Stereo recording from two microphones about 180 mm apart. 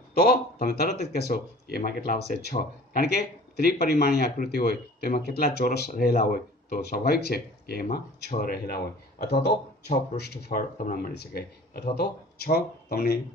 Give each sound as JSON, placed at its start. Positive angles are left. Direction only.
{"t": 0.1, "sound": "speech", "side_deg": 60}
{"t": 5.9, "sound": "speech", "side_deg": 50}